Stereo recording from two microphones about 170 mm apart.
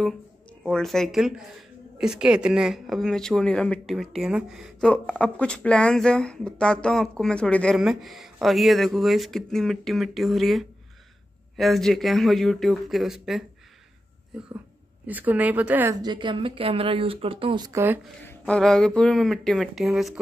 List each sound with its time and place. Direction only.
0.7 s speech: centre (ahead or behind)
16.0 s speech: 25° right (ahead or behind)
17.6 s speech: 15° right (ahead or behind)
18.5 s speech: 5° left (ahead or behind)